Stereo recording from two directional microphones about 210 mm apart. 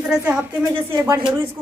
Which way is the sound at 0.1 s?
5° right (ahead or behind).